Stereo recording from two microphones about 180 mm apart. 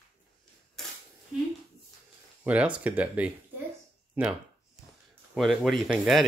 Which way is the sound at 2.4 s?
5° right (ahead or behind).